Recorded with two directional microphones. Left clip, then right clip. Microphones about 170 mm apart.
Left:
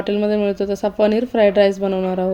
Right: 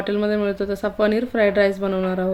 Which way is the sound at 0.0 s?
15° left (ahead or behind).